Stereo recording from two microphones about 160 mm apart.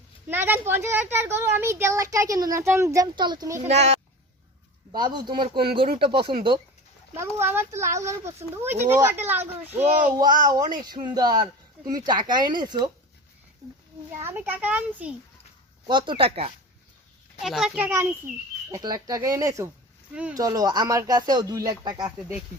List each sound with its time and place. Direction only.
0.3 s speech: 10° right (ahead or behind)
3.6 s speech: 45° right (ahead or behind)
4.9 s speech: 25° right (ahead or behind)
7.2 s speech: 15° right (ahead or behind)
10.2 s speech: 25° right (ahead or behind)
14.2 s speech: 15° right (ahead or behind)
15.9 s speech: 30° right (ahead or behind)
17.4 s speech: centre (ahead or behind)
18.7 s speech: 25° right (ahead or behind)